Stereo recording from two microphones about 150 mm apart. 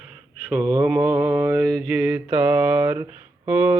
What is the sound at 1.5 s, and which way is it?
Mantra, 5° left (ahead or behind).